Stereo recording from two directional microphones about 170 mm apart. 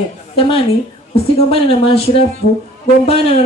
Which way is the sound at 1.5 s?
35° left (ahead or behind).